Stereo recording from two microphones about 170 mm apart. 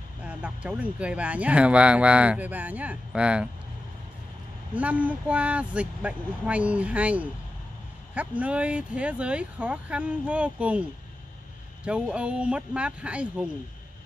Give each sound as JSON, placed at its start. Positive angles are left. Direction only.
{"t": 0.2, "sound": "speech", "side_deg": -10}
{"t": 4.7, "sound": "speech", "side_deg": -10}